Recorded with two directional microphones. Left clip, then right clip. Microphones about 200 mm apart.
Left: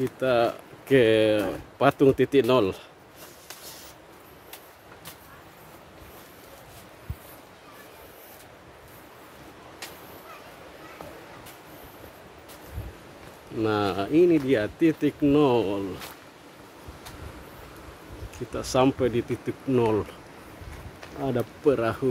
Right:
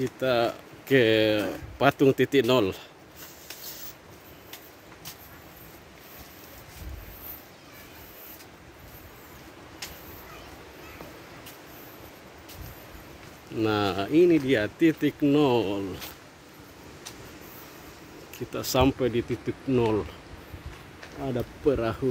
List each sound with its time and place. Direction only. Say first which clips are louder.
0.2 s speech: left 2 dB; centre (ahead or behind)
13.6 s speech: left 1 dB; 5° right (ahead or behind)
18.5 s speech: left 1 dB; centre (ahead or behind)
21.2 s speech: left 3 dB; 15° left (ahead or behind)
21.6 s speech: left 2 dB; centre (ahead or behind)